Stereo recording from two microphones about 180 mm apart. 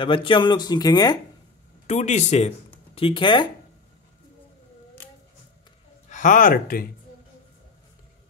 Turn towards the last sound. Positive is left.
turn(degrees=55)  # may be behind; listen again after turning